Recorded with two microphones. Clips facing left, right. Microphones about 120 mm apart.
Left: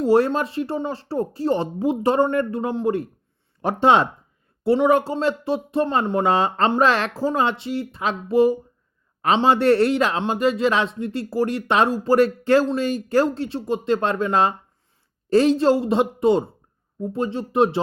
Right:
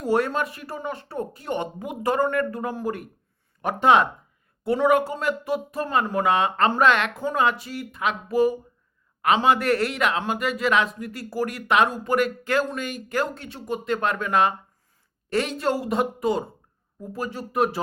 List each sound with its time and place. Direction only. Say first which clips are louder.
0.0 s a man's voice: left 5 dB; 30° left (ahead or behind)